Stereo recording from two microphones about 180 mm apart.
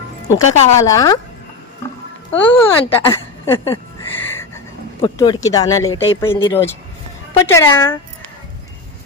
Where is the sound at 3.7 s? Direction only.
10° left (ahead or behind).